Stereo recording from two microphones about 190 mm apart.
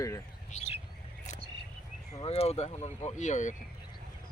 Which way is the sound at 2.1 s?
30° left (ahead or behind).